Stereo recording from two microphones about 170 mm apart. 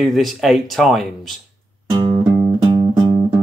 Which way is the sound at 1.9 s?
25° right (ahead or behind).